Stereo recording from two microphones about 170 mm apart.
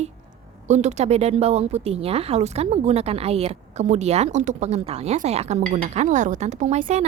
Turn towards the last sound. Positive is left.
turn(degrees=-45)  # may be behind; listen again after turning